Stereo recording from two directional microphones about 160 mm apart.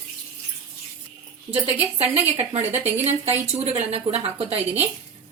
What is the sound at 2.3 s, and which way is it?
Speech, 45° right (ahead or behind).